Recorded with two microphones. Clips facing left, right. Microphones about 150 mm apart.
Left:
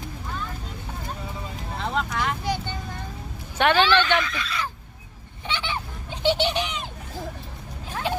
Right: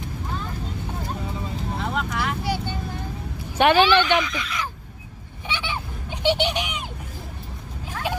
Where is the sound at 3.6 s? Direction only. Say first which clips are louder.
Right 3 dB; 10° right (ahead or behind).